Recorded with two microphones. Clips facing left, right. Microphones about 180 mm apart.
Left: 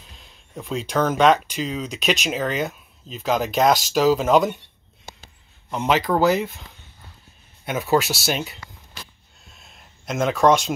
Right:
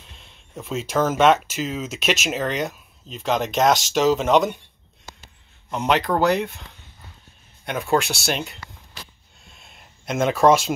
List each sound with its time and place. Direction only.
0.0 s speech: centre (ahead or behind)
5.7 s speech: centre (ahead or behind)
7.6 s speech: 5° left (ahead or behind)
9.4 s a sound: centre (ahead or behind)